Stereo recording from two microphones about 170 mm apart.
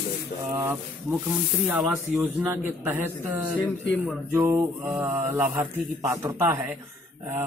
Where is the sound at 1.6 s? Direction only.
10° right (ahead or behind).